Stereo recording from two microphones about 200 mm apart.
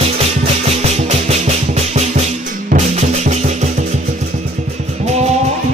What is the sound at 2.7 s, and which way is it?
Music, 35° right (ahead or behind).